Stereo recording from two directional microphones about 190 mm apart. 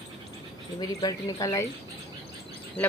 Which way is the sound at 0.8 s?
20° left (ahead or behind).